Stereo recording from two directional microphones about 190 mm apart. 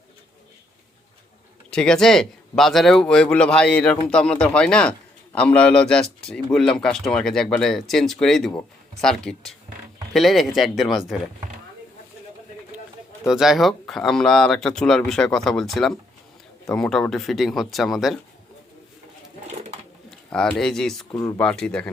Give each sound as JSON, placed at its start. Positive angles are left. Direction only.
{"t": 1.7, "sound": "a man's voice", "side_deg": 5}
{"t": 13.2, "sound": "a man's voice", "side_deg": 0}
{"t": 19.5, "sound": "bird", "side_deg": -35}
{"t": 20.1, "sound": "a man's voice", "side_deg": 5}